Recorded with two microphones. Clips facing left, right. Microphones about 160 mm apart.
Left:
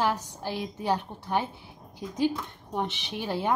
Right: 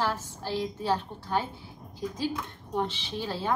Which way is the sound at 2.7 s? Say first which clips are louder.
Right 1 dB; 15° left (ahead or behind).